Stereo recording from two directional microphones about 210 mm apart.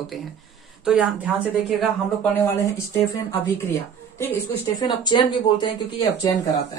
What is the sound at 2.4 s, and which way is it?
Speech, 15° left (ahead or behind).